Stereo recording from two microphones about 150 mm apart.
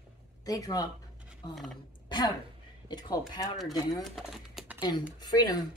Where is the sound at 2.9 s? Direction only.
25° left (ahead or behind).